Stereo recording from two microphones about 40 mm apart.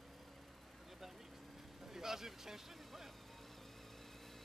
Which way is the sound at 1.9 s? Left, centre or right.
Centre.